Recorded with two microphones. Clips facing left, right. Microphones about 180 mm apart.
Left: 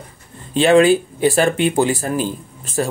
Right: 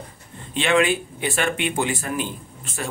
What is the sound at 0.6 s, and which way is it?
Speech, 35° left (ahead or behind).